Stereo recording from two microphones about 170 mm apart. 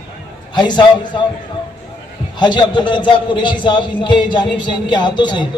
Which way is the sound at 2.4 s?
25° left (ahead or behind).